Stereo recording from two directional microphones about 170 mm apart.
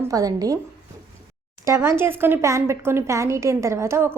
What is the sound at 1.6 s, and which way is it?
Speech, 15° right (ahead or behind).